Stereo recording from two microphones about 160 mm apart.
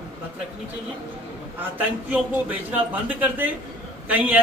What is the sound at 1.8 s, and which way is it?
A man's voice, 10° right (ahead or behind).